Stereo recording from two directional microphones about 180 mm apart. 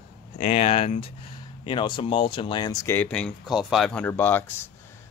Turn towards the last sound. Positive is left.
turn(degrees=10)  # may be behind; listen again after turning